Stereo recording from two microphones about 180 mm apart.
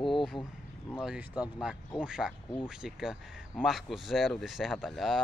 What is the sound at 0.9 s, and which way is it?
Speech, 5° right (ahead or behind).